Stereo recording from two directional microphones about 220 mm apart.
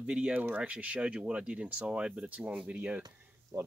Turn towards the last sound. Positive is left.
turn(degrees=-15)  # may be behind; listen again after turning